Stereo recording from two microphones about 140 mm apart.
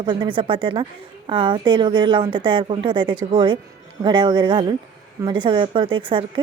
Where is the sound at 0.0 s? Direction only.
35° right (ahead or behind).